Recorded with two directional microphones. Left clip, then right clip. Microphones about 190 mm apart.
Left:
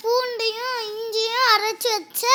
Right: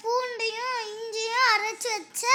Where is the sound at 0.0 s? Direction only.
10° left (ahead or behind).